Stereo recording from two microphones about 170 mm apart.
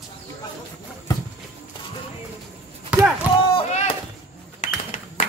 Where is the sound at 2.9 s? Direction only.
10° right (ahead or behind).